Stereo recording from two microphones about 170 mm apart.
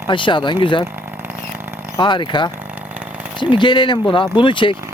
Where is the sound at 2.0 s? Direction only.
30° left (ahead or behind).